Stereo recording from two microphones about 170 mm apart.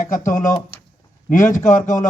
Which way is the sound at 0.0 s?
50° left (ahead or behind).